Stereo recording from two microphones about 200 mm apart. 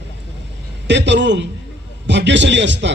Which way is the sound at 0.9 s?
60° right (ahead or behind).